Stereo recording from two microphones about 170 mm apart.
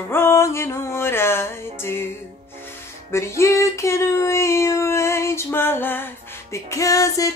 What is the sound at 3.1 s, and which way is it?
Female singing, 15° left (ahead or behind).